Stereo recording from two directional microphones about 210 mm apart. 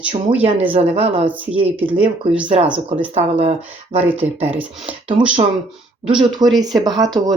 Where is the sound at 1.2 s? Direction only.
10° right (ahead or behind).